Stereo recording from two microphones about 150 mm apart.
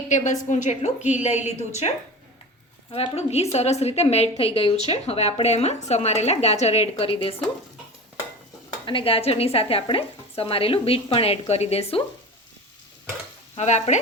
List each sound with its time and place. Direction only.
0.1 s speech: 55° left (ahead or behind)
2.9 s speech: 40° left (ahead or behind)
8.9 s a woman's voice: 35° left (ahead or behind)
13.6 s speech: 50° left (ahead or behind)